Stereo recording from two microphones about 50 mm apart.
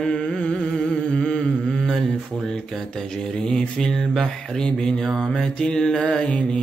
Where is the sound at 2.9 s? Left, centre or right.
Centre.